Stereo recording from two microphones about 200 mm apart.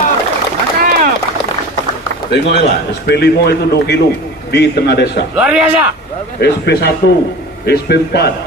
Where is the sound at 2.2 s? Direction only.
60° left (ahead or behind).